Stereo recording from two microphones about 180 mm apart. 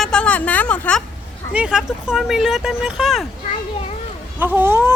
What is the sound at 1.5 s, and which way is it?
Speech, 5° right (ahead or behind).